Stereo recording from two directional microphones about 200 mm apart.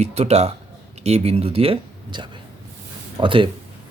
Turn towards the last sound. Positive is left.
turn(degrees=-25)  # may be behind; listen again after turning